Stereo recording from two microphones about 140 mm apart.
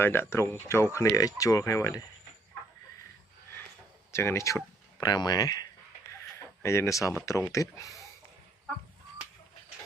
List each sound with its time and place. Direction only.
0.0 s speech: 15° left (ahead or behind)
4.1 s speech: 20° left (ahead or behind)